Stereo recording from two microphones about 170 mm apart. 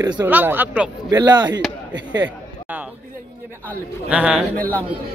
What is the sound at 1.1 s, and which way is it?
Speech, 20° right (ahead or behind).